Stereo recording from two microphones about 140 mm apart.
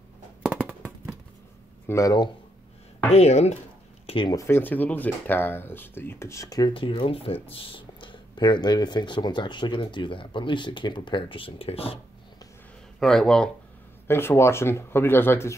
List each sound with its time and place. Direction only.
0.4 s a sound: 10° right (ahead or behind)
1.9 s speech: 25° left (ahead or behind)
3.1 s speech: 50° left (ahead or behind)
4.0 s a sound: 40° left (ahead or behind)
4.3 s speech: 20° left (ahead or behind)
6.7 s speech: 40° left (ahead or behind)
13.0 s speech: 5° left (ahead or behind)
14.0 s speech: 15° left (ahead or behind)